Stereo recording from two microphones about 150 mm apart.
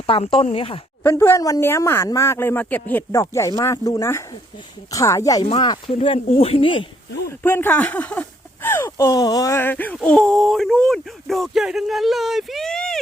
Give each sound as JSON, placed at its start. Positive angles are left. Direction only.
{"t": 0.1, "sound": "speech", "side_deg": 40}
{"t": 1.0, "sound": "speech", "side_deg": 15}
{"t": 5.6, "sound": "speech", "side_deg": 35}
{"t": 7.3, "sound": "speech", "side_deg": 15}